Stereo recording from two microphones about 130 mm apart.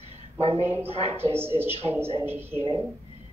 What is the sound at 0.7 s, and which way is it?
A woman's voice, 15° right (ahead or behind).